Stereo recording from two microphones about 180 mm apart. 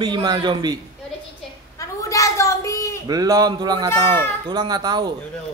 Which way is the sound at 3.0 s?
20° right (ahead or behind).